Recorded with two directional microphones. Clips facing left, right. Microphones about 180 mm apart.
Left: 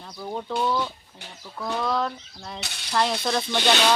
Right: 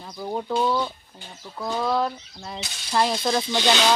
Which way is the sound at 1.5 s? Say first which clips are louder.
Right 1 dB; 15° right (ahead or behind).